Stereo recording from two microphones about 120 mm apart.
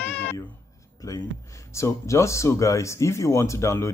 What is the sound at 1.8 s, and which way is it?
Speech, 25° left (ahead or behind).